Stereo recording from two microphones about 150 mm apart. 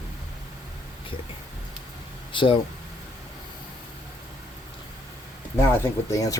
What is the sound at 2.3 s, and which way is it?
Speech, 35° left (ahead or behind).